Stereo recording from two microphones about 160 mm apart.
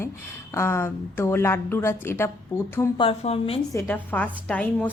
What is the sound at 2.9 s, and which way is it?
Speech, 35° left (ahead or behind).